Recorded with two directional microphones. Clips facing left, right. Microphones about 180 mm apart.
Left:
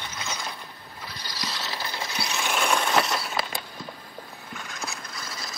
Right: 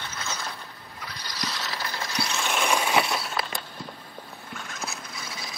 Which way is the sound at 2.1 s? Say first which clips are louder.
Even; centre (ahead or behind).